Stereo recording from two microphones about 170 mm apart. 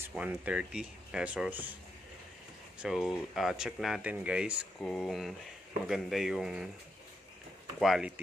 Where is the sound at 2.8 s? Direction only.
Centre (ahead or behind).